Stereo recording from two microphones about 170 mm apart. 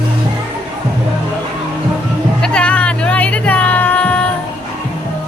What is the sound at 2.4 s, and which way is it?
Music, 5° left (ahead or behind).